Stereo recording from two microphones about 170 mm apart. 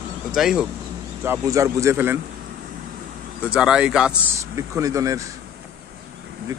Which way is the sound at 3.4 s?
5° right (ahead or behind).